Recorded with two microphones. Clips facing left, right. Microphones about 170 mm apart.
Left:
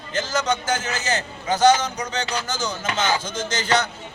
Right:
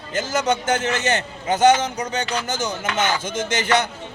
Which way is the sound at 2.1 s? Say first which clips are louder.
Right 2 dB; 55° right (ahead or behind).